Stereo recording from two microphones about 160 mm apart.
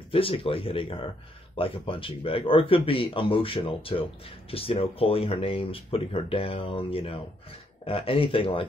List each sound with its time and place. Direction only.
0.1 s speech: 35° left (ahead or behind)